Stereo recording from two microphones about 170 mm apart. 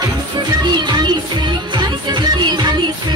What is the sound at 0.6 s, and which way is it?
Music, 25° right (ahead or behind).